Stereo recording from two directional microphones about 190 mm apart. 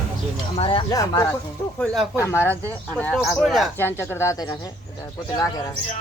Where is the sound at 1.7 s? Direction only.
5° left (ahead or behind).